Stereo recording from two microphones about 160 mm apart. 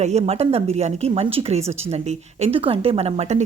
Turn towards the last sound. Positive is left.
turn(degrees=-45)  # may be behind; listen again after turning